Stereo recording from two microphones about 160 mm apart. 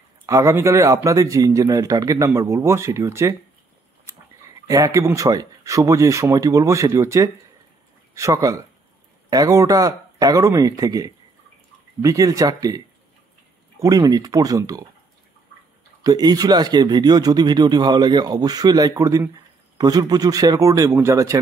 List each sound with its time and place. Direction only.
0.3 s a man's voice: 15° right (ahead or behind)
16.0 s a man's voice: 25° right (ahead or behind)